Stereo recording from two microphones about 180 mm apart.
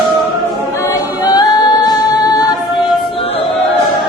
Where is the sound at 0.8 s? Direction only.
20° left (ahead or behind).